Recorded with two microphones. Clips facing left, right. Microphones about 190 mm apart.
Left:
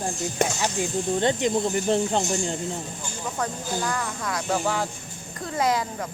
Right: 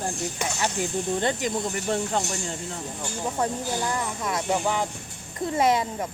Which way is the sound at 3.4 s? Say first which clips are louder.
Right 1 dB; 20° right (ahead or behind).